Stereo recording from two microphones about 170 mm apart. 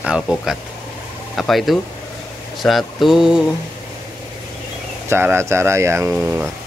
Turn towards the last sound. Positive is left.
turn(degrees=-5)  # may be behind; listen again after turning